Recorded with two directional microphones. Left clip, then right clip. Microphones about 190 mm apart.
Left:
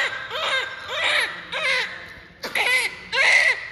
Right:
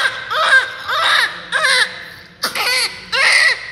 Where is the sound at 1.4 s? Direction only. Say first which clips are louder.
Right 9 dB; 20° right (ahead or behind).